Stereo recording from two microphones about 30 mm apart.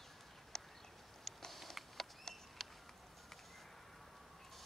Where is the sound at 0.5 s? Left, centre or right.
Centre.